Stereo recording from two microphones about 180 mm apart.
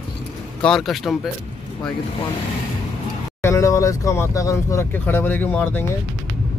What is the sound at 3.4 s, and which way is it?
Speech, 15° left (ahead or behind).